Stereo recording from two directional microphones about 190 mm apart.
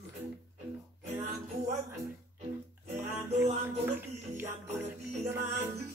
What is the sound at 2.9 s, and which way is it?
Music, 10° right (ahead or behind).